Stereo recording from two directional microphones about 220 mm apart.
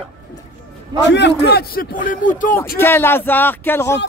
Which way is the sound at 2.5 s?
10° left (ahead or behind).